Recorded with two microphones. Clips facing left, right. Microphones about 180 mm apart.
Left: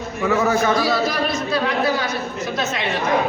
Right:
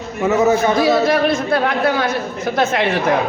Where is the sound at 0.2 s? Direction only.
20° right (ahead or behind).